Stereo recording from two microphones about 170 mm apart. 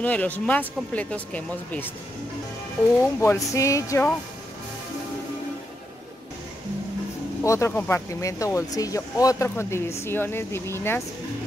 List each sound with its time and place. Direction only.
0.0 s speech: 10° left (ahead or behind)
3.2 s speech: 15° left (ahead or behind)
7.4 s speech: 15° left (ahead or behind)